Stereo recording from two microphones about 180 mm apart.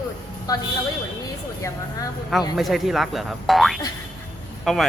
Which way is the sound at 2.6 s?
Centre (ahead or behind).